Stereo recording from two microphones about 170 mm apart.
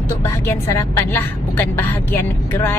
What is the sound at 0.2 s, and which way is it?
A woman's voice, 15° left (ahead or behind).